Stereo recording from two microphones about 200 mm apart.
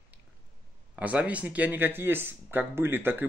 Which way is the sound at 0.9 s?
5° right (ahead or behind).